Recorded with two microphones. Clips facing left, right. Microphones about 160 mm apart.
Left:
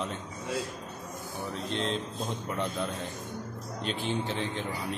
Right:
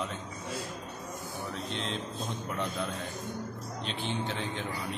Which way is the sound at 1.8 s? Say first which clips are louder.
Left 3 dB; centre (ahead or behind).